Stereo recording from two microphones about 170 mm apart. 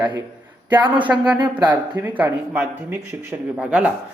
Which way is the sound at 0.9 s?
10° right (ahead or behind).